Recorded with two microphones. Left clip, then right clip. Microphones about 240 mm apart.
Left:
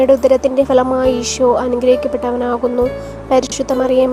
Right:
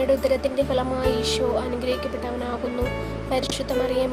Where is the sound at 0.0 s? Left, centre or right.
Left.